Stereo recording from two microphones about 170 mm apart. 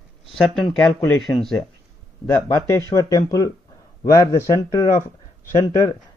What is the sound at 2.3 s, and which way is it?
Speech, 20° left (ahead or behind).